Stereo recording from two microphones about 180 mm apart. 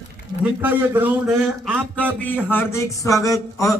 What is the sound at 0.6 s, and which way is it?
Speech, 10° right (ahead or behind).